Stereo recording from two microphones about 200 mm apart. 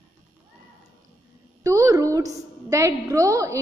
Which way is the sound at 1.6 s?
15° right (ahead or behind).